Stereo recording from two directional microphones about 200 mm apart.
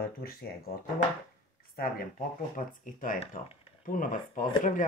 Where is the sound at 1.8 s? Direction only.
45° left (ahead or behind).